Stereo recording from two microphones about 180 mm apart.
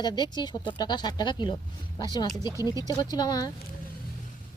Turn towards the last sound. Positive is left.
turn(degrees=20)  # may be behind; listen again after turning